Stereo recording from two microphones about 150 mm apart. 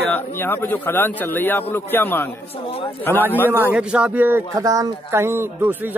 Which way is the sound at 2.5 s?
40° left (ahead or behind).